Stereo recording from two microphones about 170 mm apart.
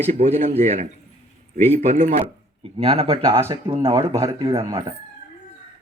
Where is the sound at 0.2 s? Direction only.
35° right (ahead or behind).